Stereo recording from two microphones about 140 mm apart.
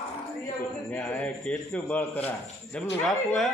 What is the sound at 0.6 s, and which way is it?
A man's voice, 10° left (ahead or behind).